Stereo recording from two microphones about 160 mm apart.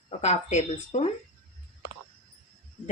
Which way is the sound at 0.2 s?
45° left (ahead or behind).